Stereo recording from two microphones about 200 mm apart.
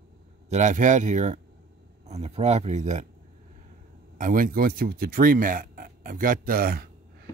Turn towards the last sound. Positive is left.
turn(degrees=-45)  # may be behind; listen again after turning